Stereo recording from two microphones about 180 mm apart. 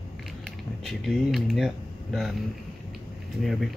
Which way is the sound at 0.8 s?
Centre (ahead or behind).